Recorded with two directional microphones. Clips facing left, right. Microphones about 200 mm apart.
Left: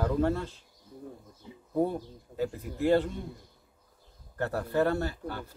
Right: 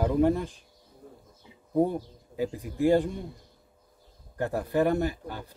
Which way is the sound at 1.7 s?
15° right (ahead or behind).